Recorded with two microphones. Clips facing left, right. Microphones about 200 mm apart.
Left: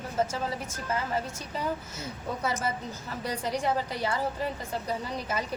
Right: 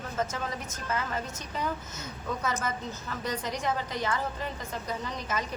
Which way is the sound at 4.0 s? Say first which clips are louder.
Left 1 dB; 10° left (ahead or behind).